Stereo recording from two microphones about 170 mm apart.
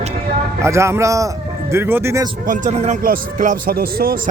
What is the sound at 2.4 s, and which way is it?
Speech, 50° right (ahead or behind).